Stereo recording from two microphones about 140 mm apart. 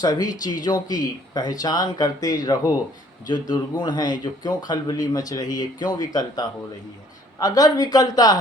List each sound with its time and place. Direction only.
0.0 s speech: 30° left (ahead or behind)